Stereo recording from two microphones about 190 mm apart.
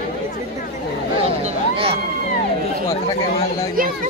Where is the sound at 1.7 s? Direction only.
30° right (ahead or behind).